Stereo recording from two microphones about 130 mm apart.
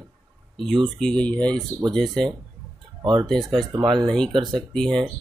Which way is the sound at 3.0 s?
40° right (ahead or behind).